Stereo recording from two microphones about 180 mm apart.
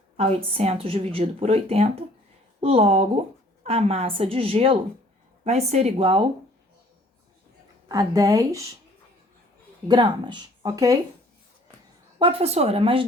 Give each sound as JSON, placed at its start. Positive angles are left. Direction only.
{"t": 0.2, "sound": "a woman's voice", "side_deg": -30}
{"t": 7.9, "sound": "speech", "side_deg": -20}
{"t": 9.9, "sound": "speech", "side_deg": -25}
{"t": 12.2, "sound": "a woman's voice", "side_deg": -35}